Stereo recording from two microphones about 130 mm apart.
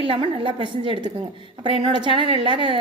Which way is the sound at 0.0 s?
45° right (ahead or behind).